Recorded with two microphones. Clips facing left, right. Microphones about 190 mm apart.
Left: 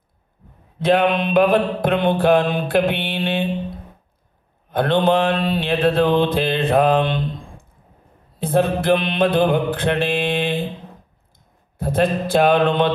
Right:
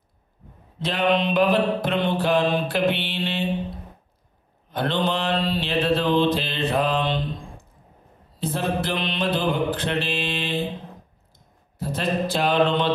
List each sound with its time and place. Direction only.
0.7 s mantra: 55° left (ahead or behind)
4.6 s mantra: 55° left (ahead or behind)
8.4 s mantra: 55° left (ahead or behind)